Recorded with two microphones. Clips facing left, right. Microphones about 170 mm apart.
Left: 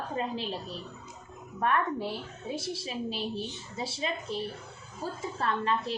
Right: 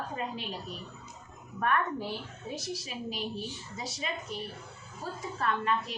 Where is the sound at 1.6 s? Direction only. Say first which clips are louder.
Left 2 dB; 25° left (ahead or behind).